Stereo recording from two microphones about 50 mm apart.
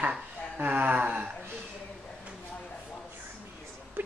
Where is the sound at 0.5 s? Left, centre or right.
Right.